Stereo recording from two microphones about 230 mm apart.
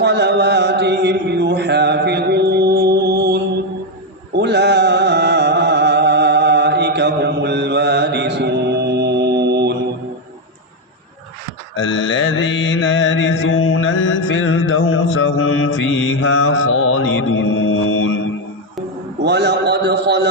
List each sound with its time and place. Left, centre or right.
0.0 s mantra: right
4.4 s music: right
11.8 s mantra: left
19.2 s a sound: right